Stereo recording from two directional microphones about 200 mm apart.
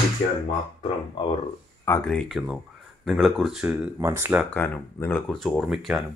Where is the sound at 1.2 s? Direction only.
25° left (ahead or behind).